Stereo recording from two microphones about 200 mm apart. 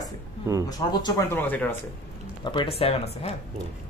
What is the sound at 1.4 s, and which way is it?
Speech, 10° left (ahead or behind).